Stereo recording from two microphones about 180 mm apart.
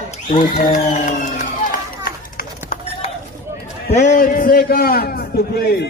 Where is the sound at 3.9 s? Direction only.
45° left (ahead or behind); by 5.8 s 60° left (ahead or behind).